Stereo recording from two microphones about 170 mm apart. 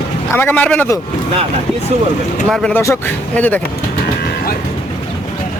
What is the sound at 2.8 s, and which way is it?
Speech, 15° left (ahead or behind).